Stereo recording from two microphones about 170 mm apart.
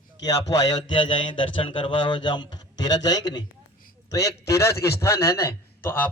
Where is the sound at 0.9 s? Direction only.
30° left (ahead or behind).